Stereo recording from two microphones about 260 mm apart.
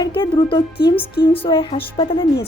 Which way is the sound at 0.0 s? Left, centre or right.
Centre.